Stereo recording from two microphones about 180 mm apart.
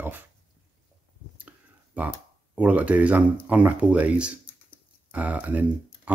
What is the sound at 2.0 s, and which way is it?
Speech, 5° right (ahead or behind).